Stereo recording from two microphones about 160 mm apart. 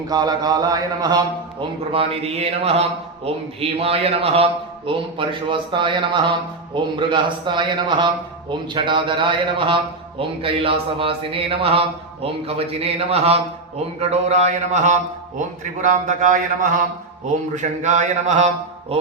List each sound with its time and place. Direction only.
0.1 s mantra: 25° right (ahead or behind)
1.9 s a man's voice: 35° right (ahead or behind)